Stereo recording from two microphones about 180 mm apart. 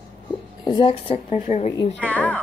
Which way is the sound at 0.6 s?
25° left (ahead or behind).